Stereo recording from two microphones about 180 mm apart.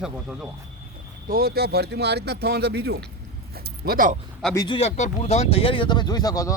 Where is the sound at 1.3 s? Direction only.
60° right (ahead or behind).